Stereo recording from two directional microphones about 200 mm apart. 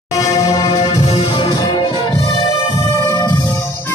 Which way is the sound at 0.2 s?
15° left (ahead or behind).